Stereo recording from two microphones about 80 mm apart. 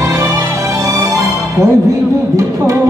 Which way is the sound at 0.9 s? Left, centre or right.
Right.